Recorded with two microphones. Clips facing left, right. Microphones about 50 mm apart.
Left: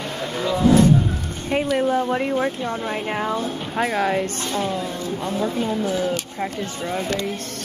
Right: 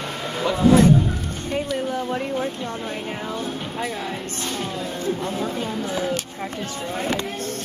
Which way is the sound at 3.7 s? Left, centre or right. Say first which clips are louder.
Left 12 dB; left.